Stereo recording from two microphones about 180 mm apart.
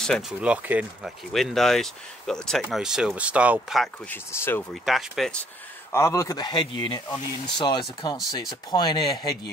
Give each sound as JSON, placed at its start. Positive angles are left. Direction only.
{"t": 0.0, "sound": "speech", "side_deg": 0}
{"t": 4.1, "sound": "speech", "side_deg": 10}
{"t": 4.8, "sound": "speech", "side_deg": 0}
{"t": 5.9, "sound": "speech", "side_deg": 15}